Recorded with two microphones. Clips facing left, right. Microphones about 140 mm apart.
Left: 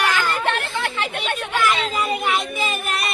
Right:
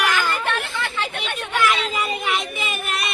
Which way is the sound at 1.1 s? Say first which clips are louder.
Left 2 dB; centre (ahead or behind).